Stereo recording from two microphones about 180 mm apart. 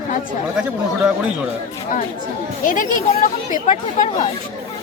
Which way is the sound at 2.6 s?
50° left (ahead or behind).